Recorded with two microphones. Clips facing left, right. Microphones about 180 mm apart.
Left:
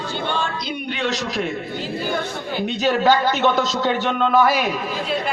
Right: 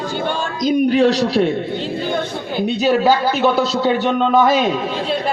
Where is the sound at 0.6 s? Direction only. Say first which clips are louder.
Right 12 dB; 40° right (ahead or behind).